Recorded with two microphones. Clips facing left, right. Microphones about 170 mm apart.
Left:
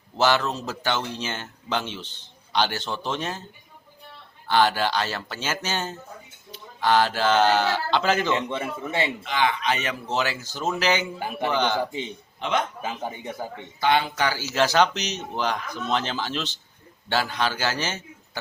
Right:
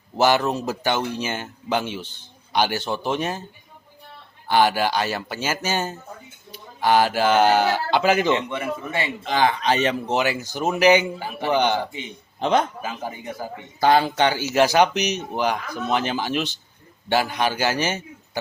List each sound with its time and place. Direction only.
0.2 s a man's voice: 15° right (ahead or behind)
4.4 s a man's voice: 10° right (ahead or behind)
8.4 s a man's voice: 25° left (ahead or behind)
9.2 s speech: 35° right (ahead or behind)
10.1 s a man's voice: 15° right (ahead or behind)
12.4 s a man's voice: 35° right (ahead or behind)
12.8 s a man's voice: 25° left (ahead or behind)
13.7 s speech: 40° right (ahead or behind)
14.2 s a man's voice: 20° right (ahead or behind)